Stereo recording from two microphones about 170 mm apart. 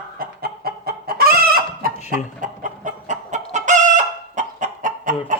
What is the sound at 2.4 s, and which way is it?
Chicken, 50° right (ahead or behind).